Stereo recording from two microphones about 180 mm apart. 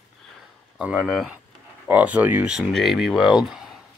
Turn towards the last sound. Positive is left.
turn(degrees=-5)  # may be behind; listen again after turning